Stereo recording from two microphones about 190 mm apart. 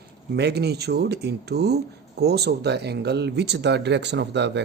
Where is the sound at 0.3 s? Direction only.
60° right (ahead or behind).